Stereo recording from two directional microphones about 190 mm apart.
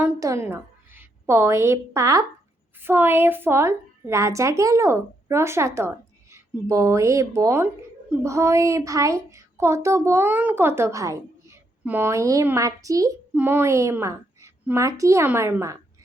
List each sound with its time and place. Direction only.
0.0 s a woman's voice: 15° right (ahead or behind)